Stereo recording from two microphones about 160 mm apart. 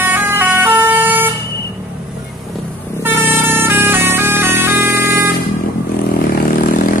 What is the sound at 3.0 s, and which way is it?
Music, 20° right (ahead or behind).